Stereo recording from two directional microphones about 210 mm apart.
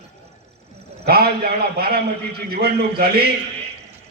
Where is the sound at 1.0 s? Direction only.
45° right (ahead or behind).